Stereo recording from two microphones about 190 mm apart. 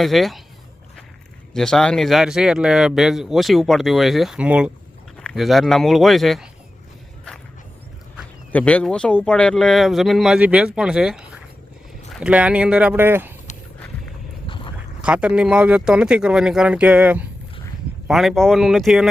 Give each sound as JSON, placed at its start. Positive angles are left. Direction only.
{"t": 0.0, "sound": "speech", "side_deg": 0}
{"t": 1.5, "sound": "speech", "side_deg": 5}
{"t": 8.5, "sound": "speech", "side_deg": 5}
{"t": 14.4, "sound": "dog", "side_deg": 25}
{"t": 15.0, "sound": "speech", "side_deg": -5}